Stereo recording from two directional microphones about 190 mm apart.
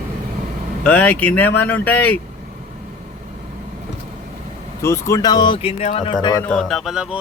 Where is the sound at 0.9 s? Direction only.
5° left (ahead or behind).